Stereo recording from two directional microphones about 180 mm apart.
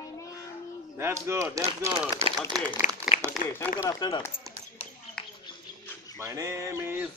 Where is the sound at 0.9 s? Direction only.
15° right (ahead or behind).